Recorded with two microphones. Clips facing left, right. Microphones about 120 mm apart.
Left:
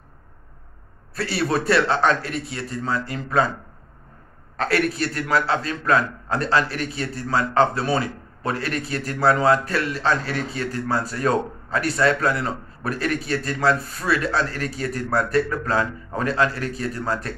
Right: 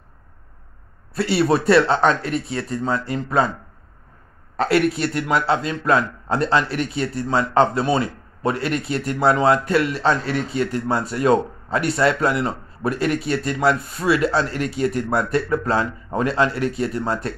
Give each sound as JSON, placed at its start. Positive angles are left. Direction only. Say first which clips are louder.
{"t": 1.1, "sound": "a man's voice", "louder": "right 5 dB", "side_deg": -25}
{"t": 4.6, "sound": "a man's voice", "louder": "right 4 dB", "side_deg": -25}